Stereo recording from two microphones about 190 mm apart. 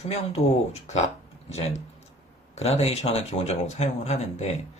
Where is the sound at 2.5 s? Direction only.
35° left (ahead or behind).